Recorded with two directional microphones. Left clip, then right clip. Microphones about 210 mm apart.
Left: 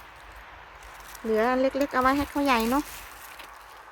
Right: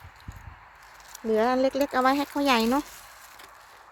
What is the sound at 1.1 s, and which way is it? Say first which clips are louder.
Speech: right 1 dB; 35° right (ahead or behind).